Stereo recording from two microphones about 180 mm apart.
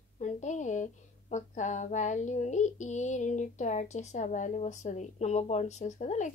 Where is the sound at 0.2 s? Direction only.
40° left (ahead or behind).